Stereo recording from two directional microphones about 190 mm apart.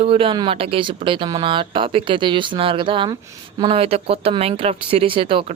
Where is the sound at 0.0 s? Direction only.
30° right (ahead or behind).